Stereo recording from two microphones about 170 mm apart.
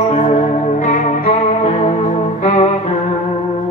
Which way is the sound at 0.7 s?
45° left (ahead or behind).